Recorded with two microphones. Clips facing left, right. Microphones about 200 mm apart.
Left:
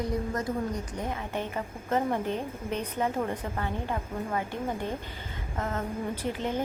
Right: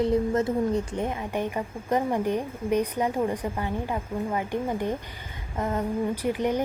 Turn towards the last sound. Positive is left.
turn(degrees=-15)  # may be behind; listen again after turning